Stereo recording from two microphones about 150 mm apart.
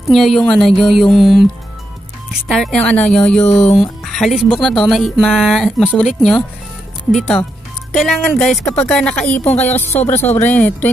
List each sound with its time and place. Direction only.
0.1 s music: centre (ahead or behind)
3.4 s speech: 45° left (ahead or behind)
3.7 s music: centre (ahead or behind)
7.9 s speech: centre (ahead or behind)